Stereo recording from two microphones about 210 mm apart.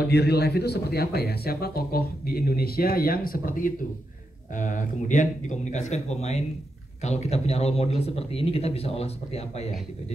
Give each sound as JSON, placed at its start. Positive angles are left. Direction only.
{"t": 0.1, "sound": "speech", "side_deg": 50}